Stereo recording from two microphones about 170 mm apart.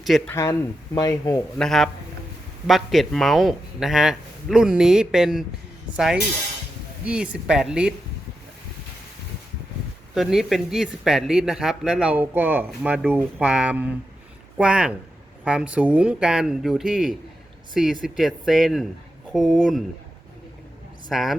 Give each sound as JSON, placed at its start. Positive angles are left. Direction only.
{"t": 0.3, "sound": "speech", "side_deg": 20}
{"t": 1.5, "sound": "speech", "side_deg": 0}
{"t": 10.2, "sound": "speech", "side_deg": 0}
{"t": 21.1, "sound": "speech", "side_deg": 0}